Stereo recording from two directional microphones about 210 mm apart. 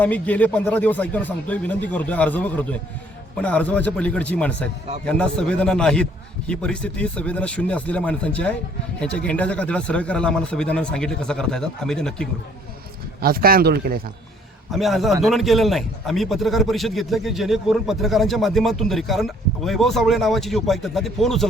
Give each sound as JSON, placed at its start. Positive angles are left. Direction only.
{"t": 0.0, "sound": "a man's voice", "side_deg": 5}
{"t": 13.2, "sound": "speech", "side_deg": -45}
{"t": 14.7, "sound": "a man's voice", "side_deg": 0}